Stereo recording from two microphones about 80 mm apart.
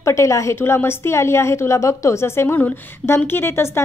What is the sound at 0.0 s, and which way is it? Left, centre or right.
A woman's voice, left.